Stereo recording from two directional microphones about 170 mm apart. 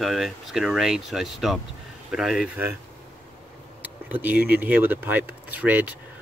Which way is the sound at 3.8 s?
10° right (ahead or behind).